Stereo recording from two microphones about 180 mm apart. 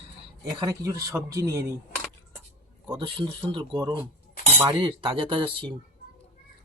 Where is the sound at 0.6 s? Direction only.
20° right (ahead or behind).